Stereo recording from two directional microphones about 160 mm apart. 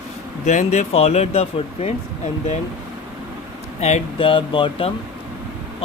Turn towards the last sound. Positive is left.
turn(degrees=35)  # may be behind; listen again after turning